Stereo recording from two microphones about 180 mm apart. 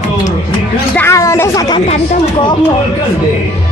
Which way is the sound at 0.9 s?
15° left (ahead or behind).